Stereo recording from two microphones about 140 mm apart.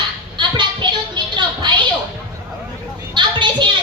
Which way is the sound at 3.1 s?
35° right (ahead or behind).